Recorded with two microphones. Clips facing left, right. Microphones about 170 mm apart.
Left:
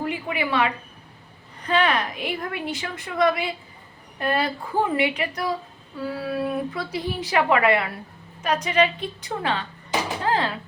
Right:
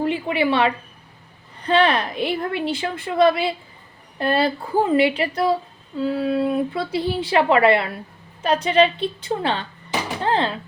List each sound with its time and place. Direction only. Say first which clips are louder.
0.0 s a woman's voice: right 6 dB; 30° right (ahead or behind)
10.2 s music: right 4 dB; 25° right (ahead or behind)